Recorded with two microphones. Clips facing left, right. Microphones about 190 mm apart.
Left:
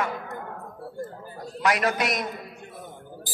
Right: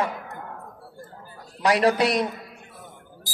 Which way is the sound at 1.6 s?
35° right (ahead or behind).